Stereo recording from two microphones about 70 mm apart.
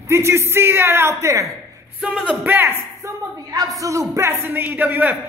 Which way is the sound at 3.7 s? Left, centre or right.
Right.